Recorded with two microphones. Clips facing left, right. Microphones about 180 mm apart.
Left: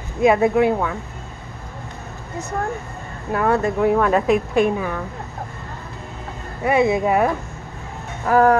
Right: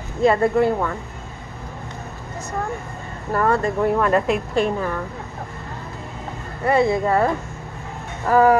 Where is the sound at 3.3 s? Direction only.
5° left (ahead or behind).